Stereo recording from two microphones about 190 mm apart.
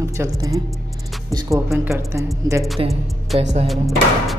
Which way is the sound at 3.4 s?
35° right (ahead or behind).